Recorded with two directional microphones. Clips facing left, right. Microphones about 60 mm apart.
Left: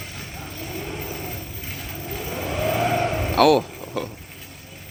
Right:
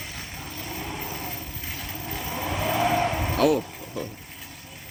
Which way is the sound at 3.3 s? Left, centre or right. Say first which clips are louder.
Left 7 dB; left.